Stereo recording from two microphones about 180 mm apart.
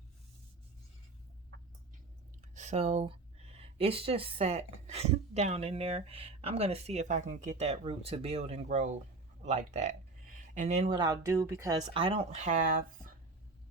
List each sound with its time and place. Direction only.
2.6 s speech: 40° right (ahead or behind)